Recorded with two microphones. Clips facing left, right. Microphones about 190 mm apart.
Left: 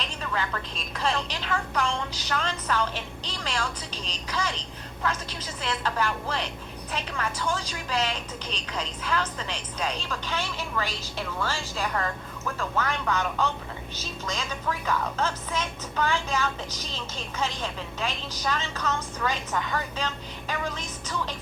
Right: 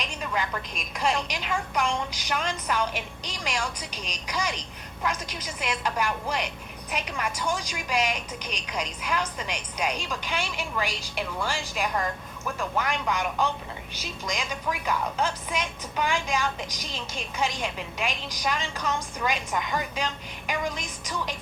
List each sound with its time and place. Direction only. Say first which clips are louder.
0.0 s a woman's voice: right 1 dB; 15° right (ahead or behind)